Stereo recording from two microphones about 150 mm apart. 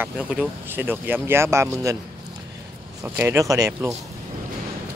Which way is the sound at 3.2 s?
20° right (ahead or behind).